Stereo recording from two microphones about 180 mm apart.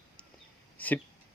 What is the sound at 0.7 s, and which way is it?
Speech, 10° left (ahead or behind).